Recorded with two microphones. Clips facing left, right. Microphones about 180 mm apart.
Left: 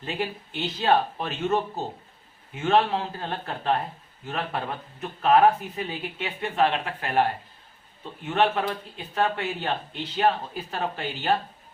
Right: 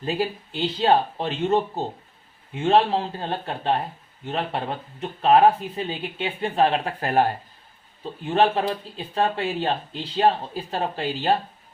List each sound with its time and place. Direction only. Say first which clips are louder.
0.0 s speech: right 5 dB; 35° right (ahead or behind)